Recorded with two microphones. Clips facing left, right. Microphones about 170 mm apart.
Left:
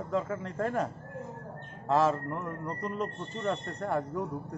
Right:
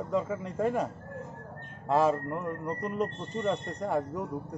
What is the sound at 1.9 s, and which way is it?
Speech, 10° right (ahead or behind).